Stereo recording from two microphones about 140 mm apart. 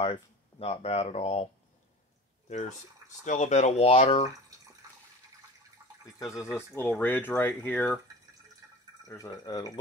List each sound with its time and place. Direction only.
0.0 s speech: 45° left (ahead or behind)
3.3 s speech: 60° left (ahead or behind)
6.3 s speech: 20° left (ahead or behind)
9.0 s speech: 25° left (ahead or behind)